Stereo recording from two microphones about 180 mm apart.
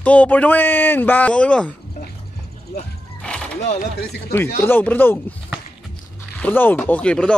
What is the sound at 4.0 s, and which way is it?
Speech, 65° left (ahead or behind).